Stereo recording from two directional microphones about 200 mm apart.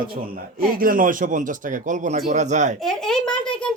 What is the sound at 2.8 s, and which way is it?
Speech, centre (ahead or behind).